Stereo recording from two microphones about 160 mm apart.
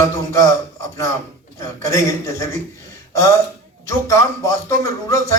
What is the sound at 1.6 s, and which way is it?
Speech, 20° left (ahead or behind).